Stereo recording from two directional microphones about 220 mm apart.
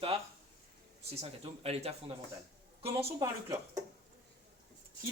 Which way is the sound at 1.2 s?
25° right (ahead or behind).